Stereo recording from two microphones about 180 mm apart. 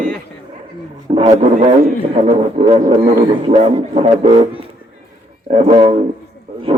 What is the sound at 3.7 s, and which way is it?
Music, 30° right (ahead or behind).